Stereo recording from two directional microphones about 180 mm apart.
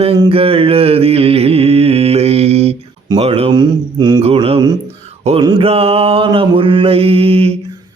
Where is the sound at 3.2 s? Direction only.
30° right (ahead or behind).